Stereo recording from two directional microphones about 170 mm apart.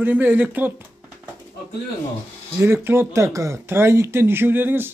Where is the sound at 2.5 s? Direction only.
15° right (ahead or behind).